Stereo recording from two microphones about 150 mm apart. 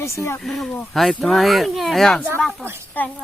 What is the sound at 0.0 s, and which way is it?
Speech, 20° left (ahead or behind).